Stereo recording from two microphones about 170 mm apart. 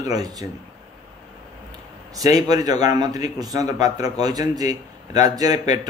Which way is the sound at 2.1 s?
20° right (ahead or behind).